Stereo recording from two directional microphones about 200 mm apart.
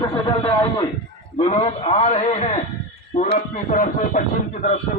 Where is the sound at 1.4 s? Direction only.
35° left (ahead or behind).